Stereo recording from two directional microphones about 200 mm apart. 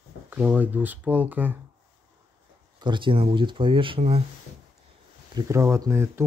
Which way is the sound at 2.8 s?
25° right (ahead or behind).